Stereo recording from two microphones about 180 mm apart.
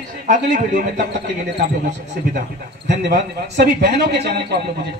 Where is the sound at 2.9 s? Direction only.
70° right (ahead or behind).